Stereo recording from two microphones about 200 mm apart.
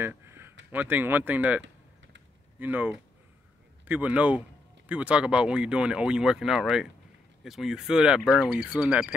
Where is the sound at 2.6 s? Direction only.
10° right (ahead or behind).